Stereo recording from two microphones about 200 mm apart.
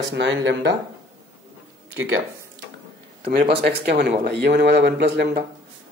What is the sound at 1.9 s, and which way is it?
Speech, 90° right.